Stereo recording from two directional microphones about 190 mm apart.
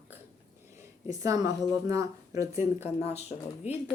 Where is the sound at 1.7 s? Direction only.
15° right (ahead or behind).